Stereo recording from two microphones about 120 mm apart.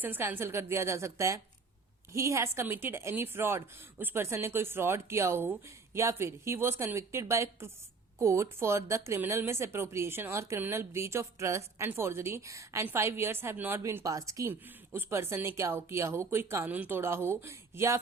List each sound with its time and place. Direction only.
0.0 s a woman's voice: 15° right (ahead or behind)